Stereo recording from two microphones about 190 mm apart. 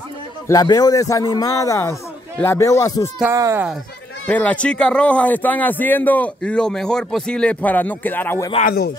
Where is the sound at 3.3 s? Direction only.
15° right (ahead or behind).